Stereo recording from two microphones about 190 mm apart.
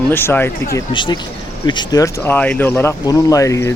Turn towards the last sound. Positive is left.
turn(degrees=15)  # may be behind; listen again after turning